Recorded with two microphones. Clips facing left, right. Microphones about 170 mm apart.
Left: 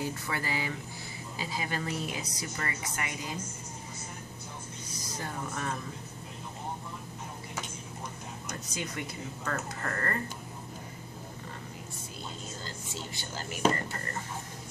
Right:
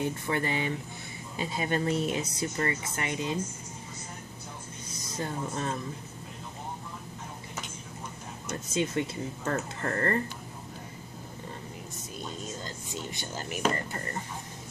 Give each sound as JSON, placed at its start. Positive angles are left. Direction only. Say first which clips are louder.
{"t": 0.0, "sound": "speech", "louder": "right 5 dB", "side_deg": -25}
{"t": 4.9, "sound": "speech", "louder": "right 4 dB", "side_deg": -25}
{"t": 8.6, "sound": "speech", "louder": "right 10 dB", "side_deg": -25}
{"t": 12.6, "sound": "a sound", "louder": "right 3 dB", "side_deg": -20}